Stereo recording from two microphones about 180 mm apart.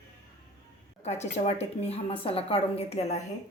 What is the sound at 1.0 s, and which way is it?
A woman's voice, 40° left (ahead or behind).